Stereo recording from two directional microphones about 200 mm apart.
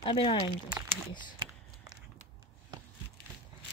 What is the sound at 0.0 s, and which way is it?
Speech, 25° left (ahead or behind).